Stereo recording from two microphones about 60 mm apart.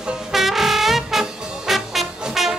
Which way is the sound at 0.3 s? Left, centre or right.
Centre.